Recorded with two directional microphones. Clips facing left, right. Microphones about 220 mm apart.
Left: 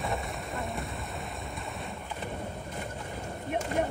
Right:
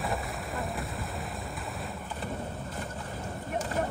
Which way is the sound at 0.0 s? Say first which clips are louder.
Even; centre (ahead or behind).